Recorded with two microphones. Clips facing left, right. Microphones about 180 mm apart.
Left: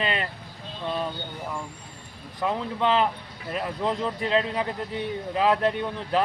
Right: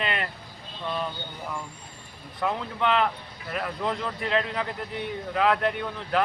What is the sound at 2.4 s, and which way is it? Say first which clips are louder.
Speech: left 2 dB; 25° left (ahead or behind).